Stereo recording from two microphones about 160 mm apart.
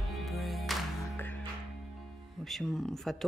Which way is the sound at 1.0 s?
10° left (ahead or behind).